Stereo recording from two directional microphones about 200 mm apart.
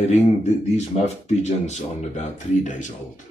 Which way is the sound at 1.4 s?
35° left (ahead or behind).